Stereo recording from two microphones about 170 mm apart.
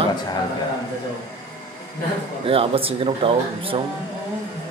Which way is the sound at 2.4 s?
35° right (ahead or behind).